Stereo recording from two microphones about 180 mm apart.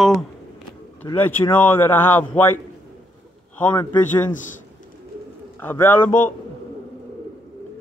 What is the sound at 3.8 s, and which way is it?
Speech, 10° left (ahead or behind).